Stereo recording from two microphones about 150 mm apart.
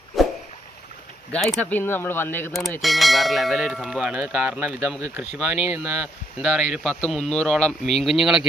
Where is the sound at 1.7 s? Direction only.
15° left (ahead or behind).